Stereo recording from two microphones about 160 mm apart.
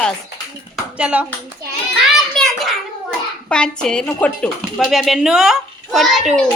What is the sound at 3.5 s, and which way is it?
A child's voice, 5° left (ahead or behind).